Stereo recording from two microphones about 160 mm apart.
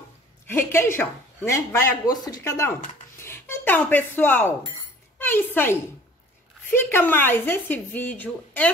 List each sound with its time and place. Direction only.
0.5 s speech: 15° left (ahead or behind)